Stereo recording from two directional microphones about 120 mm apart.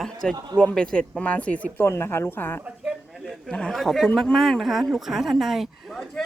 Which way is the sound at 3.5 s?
5° left (ahead or behind).